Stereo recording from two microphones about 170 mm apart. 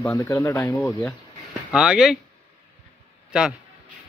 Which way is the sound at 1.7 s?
5° right (ahead or behind).